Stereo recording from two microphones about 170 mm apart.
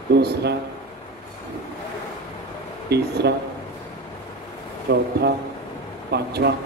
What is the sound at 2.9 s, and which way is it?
Speech, 75° right (ahead or behind).